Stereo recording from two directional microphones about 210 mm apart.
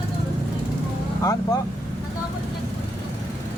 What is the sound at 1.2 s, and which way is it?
Speech, 15° left (ahead or behind).